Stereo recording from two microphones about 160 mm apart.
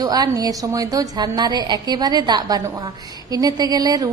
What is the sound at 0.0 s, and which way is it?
A woman's voice, 25° right (ahead or behind).